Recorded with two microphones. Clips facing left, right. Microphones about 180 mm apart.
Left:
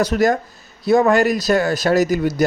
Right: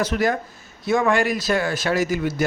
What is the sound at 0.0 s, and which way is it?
Speech, 40° left (ahead or behind).